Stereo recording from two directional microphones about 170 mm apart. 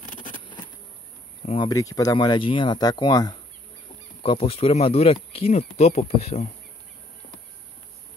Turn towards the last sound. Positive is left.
turn(degrees=35)  # may be behind; listen again after turning